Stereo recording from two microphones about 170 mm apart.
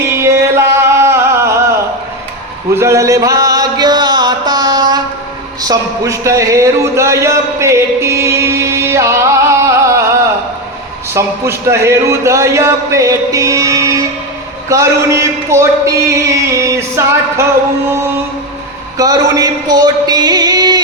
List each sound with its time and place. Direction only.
0.2 s music: 15° right (ahead or behind)
2.7 s chant: 15° right (ahead or behind)
5.6 s speech: 20° right (ahead or behind)
11.1 s a man's voice: 15° right (ahead or behind)
18.9 s music: 20° right (ahead or behind)